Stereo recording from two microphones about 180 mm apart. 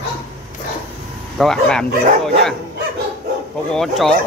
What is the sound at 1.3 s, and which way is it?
Speech, 5° left (ahead or behind).